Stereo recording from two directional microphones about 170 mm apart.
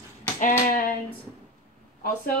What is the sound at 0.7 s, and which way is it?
Speech, 55° left (ahead or behind).